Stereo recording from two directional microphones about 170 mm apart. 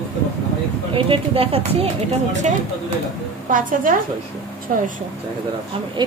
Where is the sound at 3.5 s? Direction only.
50° right (ahead or behind).